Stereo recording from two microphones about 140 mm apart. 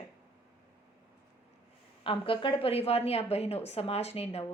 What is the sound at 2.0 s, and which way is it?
Speech, 40° left (ahead or behind).